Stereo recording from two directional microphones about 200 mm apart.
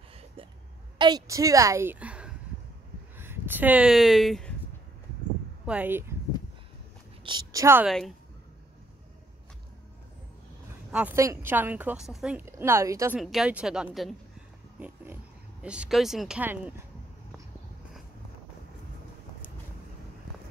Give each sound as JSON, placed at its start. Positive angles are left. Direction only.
{"t": 0.9, "sound": "a woman's voice", "side_deg": -20}
{"t": 3.2, "sound": "a sound", "side_deg": -10}
{"t": 5.7, "sound": "speech", "side_deg": -10}
{"t": 7.2, "sound": "a woman's voice", "side_deg": -20}
{"t": 10.9, "sound": "a woman's voice", "side_deg": -10}
{"t": 13.2, "sound": "speech", "side_deg": 0}
{"t": 15.6, "sound": "speech", "side_deg": -5}